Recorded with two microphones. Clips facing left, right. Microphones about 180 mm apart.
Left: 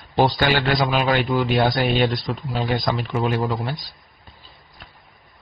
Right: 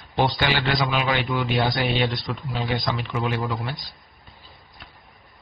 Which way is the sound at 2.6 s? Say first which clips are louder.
Left 4 dB; 45° left (ahead or behind).